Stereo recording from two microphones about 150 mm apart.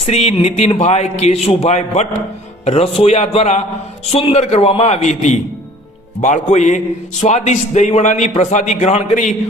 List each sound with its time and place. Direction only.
0.0 s a man's voice: 45° left (ahead or behind)